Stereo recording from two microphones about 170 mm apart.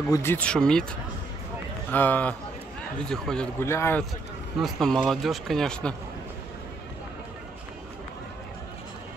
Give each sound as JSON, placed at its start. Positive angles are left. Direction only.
{"t": 0.1, "sound": "speech", "side_deg": 15}
{"t": 3.6, "sound": "speech", "side_deg": 15}
{"t": 4.6, "sound": "speech", "side_deg": 0}